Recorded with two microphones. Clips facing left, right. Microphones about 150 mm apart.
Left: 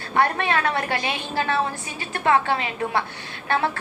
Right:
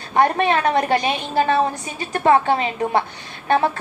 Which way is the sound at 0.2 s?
20° right (ahead or behind).